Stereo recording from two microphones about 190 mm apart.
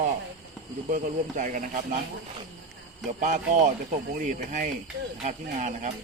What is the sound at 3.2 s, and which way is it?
Speech, 40° right (ahead or behind).